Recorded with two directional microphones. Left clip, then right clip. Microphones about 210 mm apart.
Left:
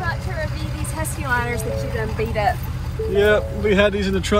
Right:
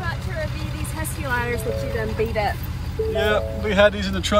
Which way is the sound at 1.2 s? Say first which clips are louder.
Left 2 dB; 15° left (ahead or behind).